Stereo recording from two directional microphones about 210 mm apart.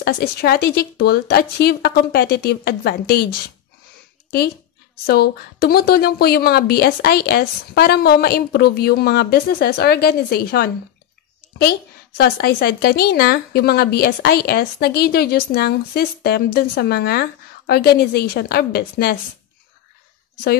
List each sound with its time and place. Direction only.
0.0 s a woman's voice: 50° left (ahead or behind)
5.0 s a woman's voice: 50° left (ahead or behind)
12.2 s a woman's voice: 50° left (ahead or behind)